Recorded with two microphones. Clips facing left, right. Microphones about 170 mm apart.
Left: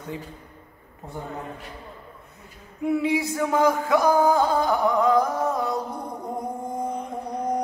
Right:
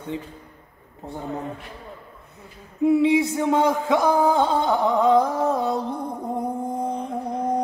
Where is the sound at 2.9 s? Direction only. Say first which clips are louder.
Right 5 dB; 25° right (ahead or behind).